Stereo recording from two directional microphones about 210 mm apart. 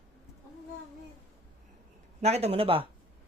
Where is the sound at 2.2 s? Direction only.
30° right (ahead or behind).